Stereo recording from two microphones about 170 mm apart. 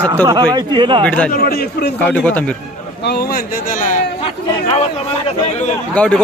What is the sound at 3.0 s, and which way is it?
Speech, 70° left (ahead or behind).